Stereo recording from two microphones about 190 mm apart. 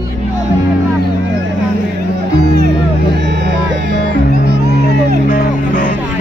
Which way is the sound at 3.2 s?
65° right (ahead or behind).